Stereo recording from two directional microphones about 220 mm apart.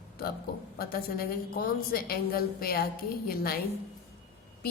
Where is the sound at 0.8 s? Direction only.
45° left (ahead or behind).